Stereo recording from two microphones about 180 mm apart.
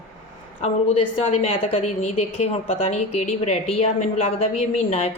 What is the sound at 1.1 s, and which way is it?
A woman's voice, 35° left (ahead or behind).